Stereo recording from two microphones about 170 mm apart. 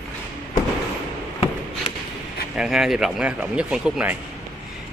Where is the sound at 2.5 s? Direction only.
5° right (ahead or behind).